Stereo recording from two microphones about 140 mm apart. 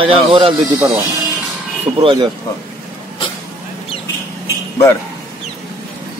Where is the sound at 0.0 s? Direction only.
40° right (ahead or behind).